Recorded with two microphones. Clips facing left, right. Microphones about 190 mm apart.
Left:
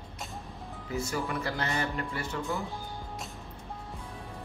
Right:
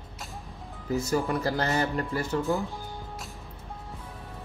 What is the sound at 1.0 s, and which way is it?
Speech, 40° right (ahead or behind).